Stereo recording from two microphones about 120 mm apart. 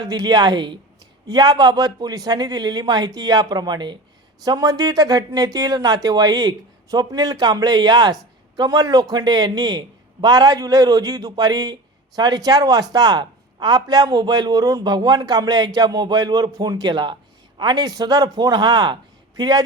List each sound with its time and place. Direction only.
0.0 s a man's voice: 35° right (ahead or behind)